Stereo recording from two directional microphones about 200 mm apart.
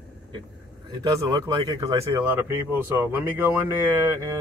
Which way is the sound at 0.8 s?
20° right (ahead or behind).